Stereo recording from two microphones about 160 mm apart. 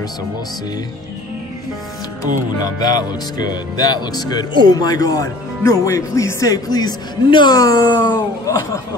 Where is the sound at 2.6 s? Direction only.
25° left (ahead or behind).